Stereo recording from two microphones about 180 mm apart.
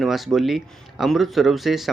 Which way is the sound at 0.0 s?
Centre (ahead or behind).